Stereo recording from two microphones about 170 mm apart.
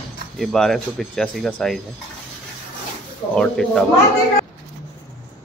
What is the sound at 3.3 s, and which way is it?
Speech, 5° left (ahead or behind).